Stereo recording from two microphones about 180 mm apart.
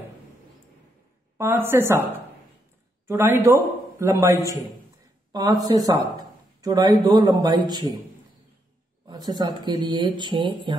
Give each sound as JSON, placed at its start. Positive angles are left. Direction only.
{"t": 1.4, "sound": "a woman's voice", "side_deg": -15}
{"t": 3.1, "sound": "a man's voice", "side_deg": -15}
{"t": 9.0, "sound": "a man's voice", "side_deg": -20}